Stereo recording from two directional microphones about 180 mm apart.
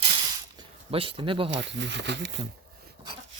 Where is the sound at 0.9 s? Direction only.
30° right (ahead or behind).